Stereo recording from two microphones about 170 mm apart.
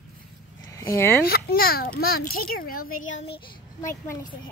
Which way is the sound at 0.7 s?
15° left (ahead or behind).